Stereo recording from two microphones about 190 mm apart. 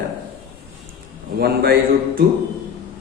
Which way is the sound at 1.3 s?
55° right (ahead or behind).